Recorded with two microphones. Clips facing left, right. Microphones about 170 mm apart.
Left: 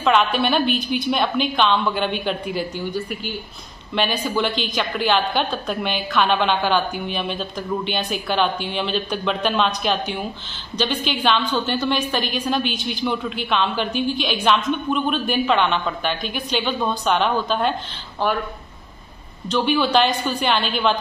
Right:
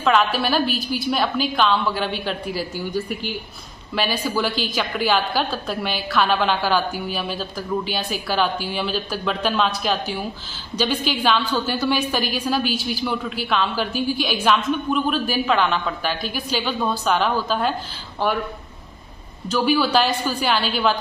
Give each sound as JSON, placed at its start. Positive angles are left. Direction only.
{"t": 0.0, "sound": "a woman's voice", "side_deg": 0}
{"t": 3.9, "sound": "a woman's voice", "side_deg": -5}
{"t": 19.5, "sound": "a woman's voice", "side_deg": -5}